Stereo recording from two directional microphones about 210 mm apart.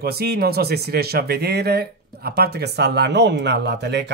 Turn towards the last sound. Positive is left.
turn(degrees=-55)  # may be behind; listen again after turning